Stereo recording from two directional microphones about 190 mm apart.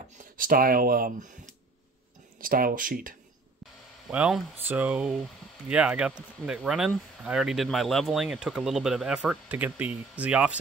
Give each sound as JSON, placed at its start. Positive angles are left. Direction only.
{"t": 0.4, "sound": "speech", "side_deg": -50}
{"t": 4.1, "sound": "speech", "side_deg": -5}